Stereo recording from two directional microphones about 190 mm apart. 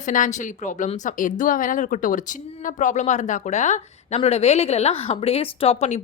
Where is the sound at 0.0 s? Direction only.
40° left (ahead or behind).